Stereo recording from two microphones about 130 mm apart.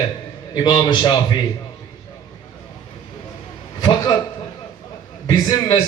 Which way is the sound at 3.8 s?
35° left (ahead or behind).